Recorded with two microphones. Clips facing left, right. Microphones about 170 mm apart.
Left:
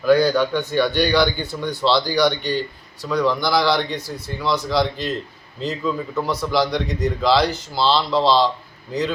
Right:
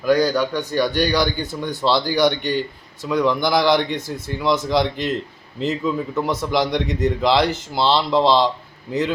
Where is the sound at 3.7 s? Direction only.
50° right (ahead or behind).